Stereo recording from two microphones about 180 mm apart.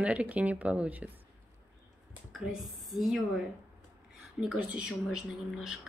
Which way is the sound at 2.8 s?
Centre (ahead or behind).